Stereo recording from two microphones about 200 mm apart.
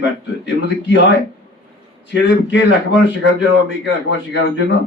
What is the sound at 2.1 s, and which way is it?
Speech, 60° left (ahead or behind).